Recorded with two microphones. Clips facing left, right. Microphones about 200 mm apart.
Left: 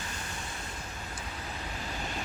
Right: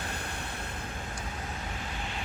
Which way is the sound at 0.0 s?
60° right (ahead or behind).